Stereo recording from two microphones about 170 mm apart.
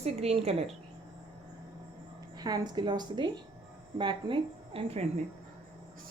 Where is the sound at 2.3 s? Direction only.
25° right (ahead or behind).